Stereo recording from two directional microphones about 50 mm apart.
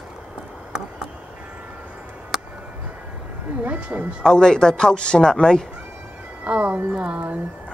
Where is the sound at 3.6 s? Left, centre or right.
Right.